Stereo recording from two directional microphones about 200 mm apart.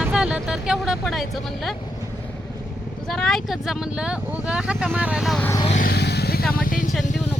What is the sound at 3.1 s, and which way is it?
Speech, centre (ahead or behind).